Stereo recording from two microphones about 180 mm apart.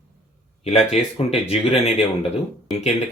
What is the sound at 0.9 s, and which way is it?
Speech, 35° left (ahead or behind).